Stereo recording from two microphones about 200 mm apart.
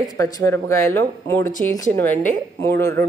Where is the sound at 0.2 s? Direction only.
15° left (ahead or behind).